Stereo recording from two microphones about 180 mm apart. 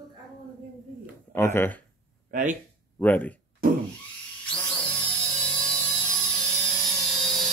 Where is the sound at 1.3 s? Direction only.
15° left (ahead or behind).